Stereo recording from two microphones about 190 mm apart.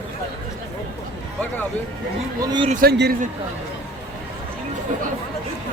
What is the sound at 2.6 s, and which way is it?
Speech, 45° right (ahead or behind).